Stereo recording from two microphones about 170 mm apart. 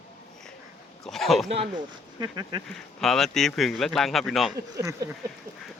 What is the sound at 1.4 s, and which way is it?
Speech, 35° right (ahead or behind).